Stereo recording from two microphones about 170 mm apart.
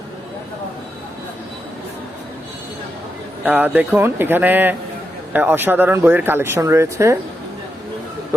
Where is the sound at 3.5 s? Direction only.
10° right (ahead or behind).